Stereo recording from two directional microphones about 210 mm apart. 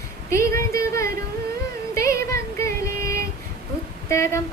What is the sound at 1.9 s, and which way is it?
Music, 15° left (ahead or behind).